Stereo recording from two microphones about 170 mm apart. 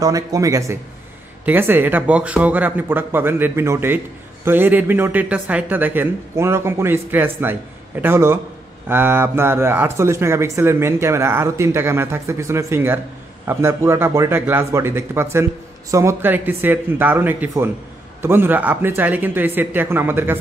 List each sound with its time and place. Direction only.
0.0 s speech: 20° right (ahead or behind)